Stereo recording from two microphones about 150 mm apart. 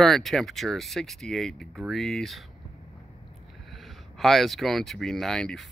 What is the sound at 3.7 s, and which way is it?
Speech, centre (ahead or behind).